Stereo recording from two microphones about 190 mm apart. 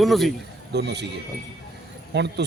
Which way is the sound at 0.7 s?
60° right (ahead or behind).